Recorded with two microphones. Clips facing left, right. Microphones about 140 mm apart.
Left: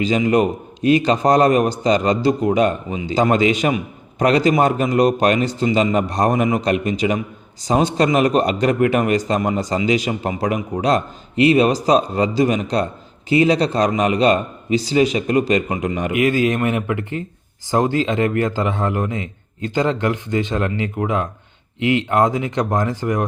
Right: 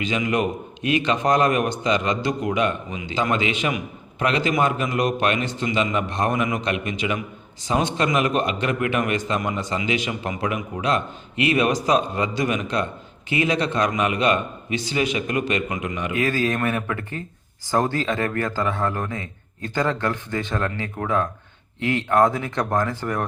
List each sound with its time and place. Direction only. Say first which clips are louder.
0.0 s a man's voice: left 6 dB; 35° left (ahead or behind)
16.1 s a man's voice: left 5 dB; 20° left (ahead or behind)